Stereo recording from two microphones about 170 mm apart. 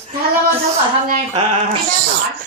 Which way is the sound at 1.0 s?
40° right (ahead or behind).